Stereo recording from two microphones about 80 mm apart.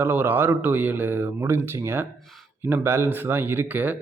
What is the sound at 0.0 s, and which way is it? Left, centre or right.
A man's voice, right.